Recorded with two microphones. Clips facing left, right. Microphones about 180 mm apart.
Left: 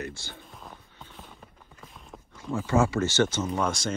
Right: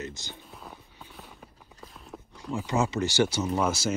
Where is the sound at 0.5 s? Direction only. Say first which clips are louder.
Right 1 dB; 5° right (ahead or behind).